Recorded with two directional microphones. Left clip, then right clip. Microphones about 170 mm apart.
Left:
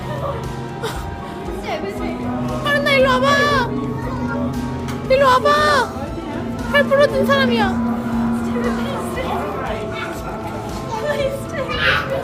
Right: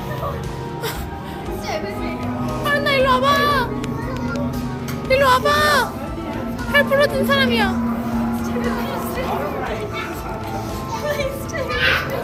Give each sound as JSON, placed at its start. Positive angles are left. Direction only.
{"t": 2.6, "sound": "music", "side_deg": 10}
{"t": 5.0, "sound": "speech", "side_deg": 10}
{"t": 11.1, "sound": "music", "side_deg": 0}